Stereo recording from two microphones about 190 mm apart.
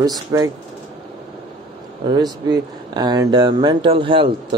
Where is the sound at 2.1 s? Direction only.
20° right (ahead or behind).